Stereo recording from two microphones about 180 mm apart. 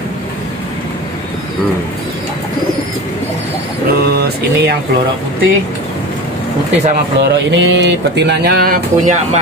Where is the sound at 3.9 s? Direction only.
60° right (ahead or behind).